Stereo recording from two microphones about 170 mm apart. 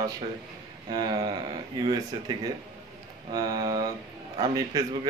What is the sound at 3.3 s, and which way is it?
Speech, 25° right (ahead or behind).